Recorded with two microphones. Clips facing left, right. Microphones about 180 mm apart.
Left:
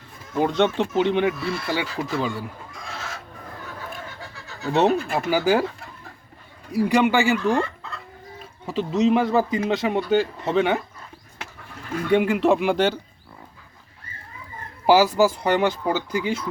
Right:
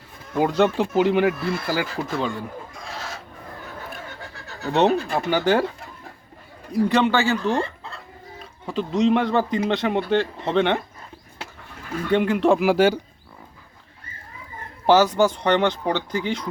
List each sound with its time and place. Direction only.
0.3 s speech: 5° right (ahead or behind)
4.7 s speech: centre (ahead or behind)
6.7 s speech: 10° left (ahead or behind)
7.6 s chicken: 30° right (ahead or behind)
8.4 s speech: 5° left (ahead or behind)
12.1 s speech: 5° left (ahead or behind)
14.8 s speech: 10° left (ahead or behind)